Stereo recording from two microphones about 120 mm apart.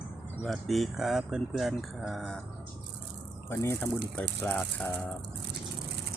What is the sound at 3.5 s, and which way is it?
Speech, 20° left (ahead or behind).